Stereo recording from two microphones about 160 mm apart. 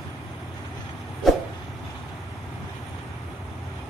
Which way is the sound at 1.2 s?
Centre (ahead or behind).